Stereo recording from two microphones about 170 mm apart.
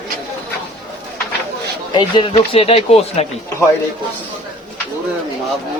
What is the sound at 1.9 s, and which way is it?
Speech, 30° left (ahead or behind).